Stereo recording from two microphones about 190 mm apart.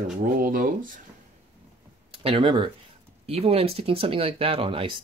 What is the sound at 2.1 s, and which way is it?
Speech, 30° right (ahead or behind).